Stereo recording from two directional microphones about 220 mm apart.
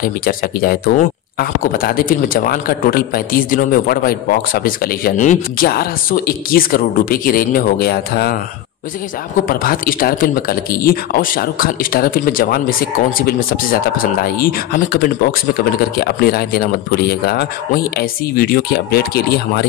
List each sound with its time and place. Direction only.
0.2 s speech: 40° left (ahead or behind)
9.5 s speech: 40° left (ahead or behind)